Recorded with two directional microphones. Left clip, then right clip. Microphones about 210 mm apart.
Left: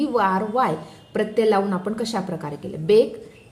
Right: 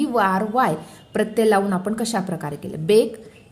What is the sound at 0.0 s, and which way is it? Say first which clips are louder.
A woman's voice: right 1 dB; 20° right (ahead or behind).